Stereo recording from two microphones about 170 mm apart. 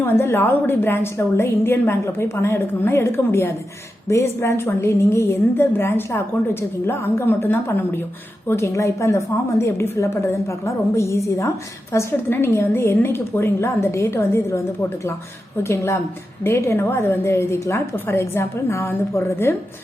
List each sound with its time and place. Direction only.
0.0 s a woman's voice: 15° left (ahead or behind)
15.6 s a woman's voice: 15° left (ahead or behind)